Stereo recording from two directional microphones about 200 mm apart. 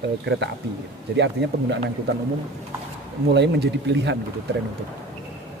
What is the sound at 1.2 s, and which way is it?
Speech, 60° right (ahead or behind).